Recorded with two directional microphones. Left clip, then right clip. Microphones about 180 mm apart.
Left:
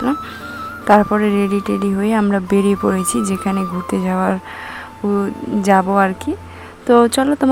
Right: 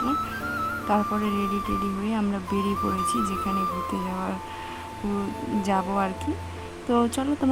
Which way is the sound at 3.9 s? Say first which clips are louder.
Left 9 dB; 25° left (ahead or behind).